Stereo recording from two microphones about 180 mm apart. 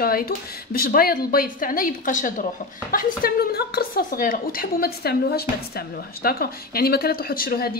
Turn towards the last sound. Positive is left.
turn(degrees=55)  # may be behind; listen again after turning